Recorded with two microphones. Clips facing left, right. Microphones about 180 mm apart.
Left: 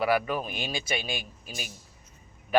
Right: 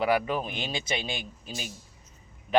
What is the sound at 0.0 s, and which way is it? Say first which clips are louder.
A man's voice: even; 20° right (ahead or behind).